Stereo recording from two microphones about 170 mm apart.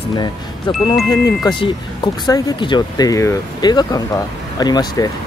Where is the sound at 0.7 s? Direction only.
30° left (ahead or behind).